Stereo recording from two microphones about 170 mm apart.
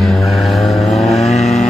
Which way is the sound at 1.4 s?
40° left (ahead or behind).